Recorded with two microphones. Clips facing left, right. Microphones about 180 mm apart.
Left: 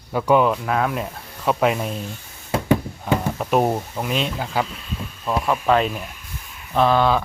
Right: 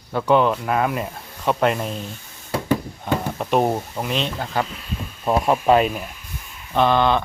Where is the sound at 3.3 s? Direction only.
Centre (ahead or behind).